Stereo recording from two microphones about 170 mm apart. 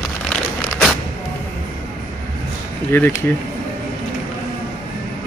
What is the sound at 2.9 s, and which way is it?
Speech, 15° left (ahead or behind).